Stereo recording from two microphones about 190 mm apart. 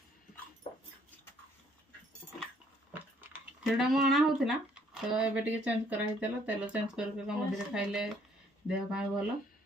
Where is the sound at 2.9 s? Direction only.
5° right (ahead or behind).